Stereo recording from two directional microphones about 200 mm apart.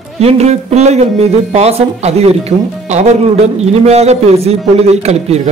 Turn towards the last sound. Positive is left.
turn(degrees=-35)  # may be behind; listen again after turning